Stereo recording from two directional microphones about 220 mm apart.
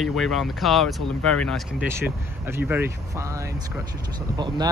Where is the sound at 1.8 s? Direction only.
10° right (ahead or behind).